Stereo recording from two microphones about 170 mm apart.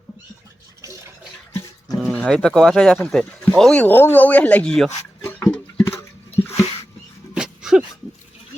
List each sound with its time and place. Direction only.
2.0 s speech: 5° left (ahead or behind)
6.5 s a sound: 35° left (ahead or behind)
7.3 s dog: 5° right (ahead or behind)